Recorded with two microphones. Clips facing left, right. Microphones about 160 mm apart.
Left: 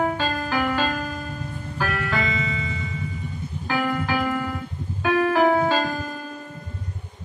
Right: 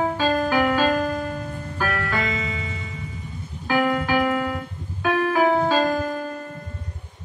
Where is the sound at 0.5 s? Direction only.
15° right (ahead or behind).